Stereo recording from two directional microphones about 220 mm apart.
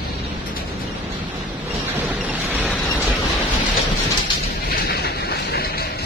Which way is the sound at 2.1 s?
5° right (ahead or behind).